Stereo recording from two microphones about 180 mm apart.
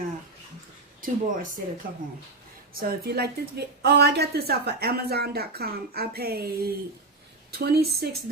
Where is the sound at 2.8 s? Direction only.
60° right (ahead or behind).